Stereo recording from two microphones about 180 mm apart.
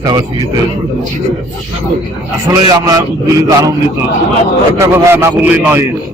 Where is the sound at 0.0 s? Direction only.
20° right (ahead or behind).